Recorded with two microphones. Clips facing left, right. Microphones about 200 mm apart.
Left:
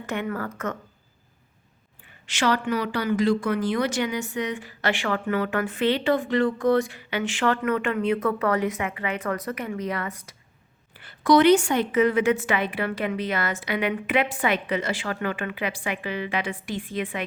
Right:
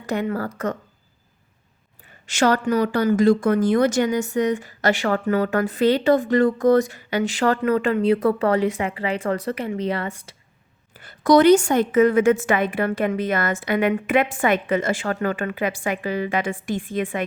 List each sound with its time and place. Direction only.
0.0 s a woman's voice: 35° right (ahead or behind)
2.2 s a woman's voice: 45° right (ahead or behind); by 10.3 s 30° right (ahead or behind)
11.0 s a woman's voice: 40° right (ahead or behind)